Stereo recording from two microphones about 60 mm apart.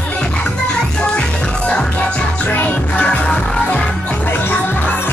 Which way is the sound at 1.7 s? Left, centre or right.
Centre.